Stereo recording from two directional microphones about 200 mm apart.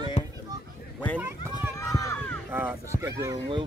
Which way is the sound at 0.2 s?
35° left (ahead or behind).